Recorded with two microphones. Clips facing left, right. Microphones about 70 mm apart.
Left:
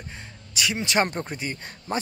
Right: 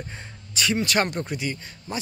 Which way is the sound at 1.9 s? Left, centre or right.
Left.